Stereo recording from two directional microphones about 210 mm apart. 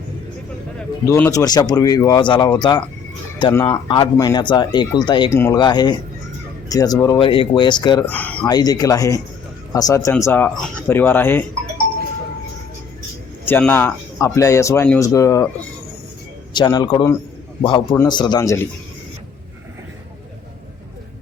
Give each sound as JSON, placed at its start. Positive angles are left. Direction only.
{"t": 1.0, "sound": "speech", "side_deg": 15}
{"t": 8.0, "sound": "speech", "side_deg": 5}
{"t": 8.4, "sound": "speech", "side_deg": 20}
{"t": 13.4, "sound": "speech", "side_deg": 10}
{"t": 16.6, "sound": "speech", "side_deg": 20}